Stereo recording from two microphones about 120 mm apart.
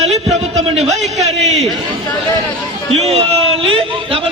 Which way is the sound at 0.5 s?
65° right (ahead or behind).